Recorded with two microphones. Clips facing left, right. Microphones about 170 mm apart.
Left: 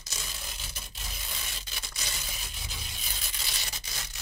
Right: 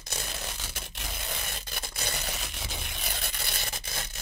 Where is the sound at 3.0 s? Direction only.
60° right (ahead or behind).